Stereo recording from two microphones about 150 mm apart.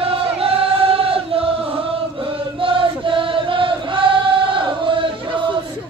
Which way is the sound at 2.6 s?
35° right (ahead or behind).